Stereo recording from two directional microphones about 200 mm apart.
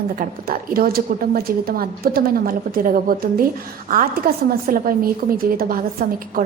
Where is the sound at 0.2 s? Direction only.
45° right (ahead or behind).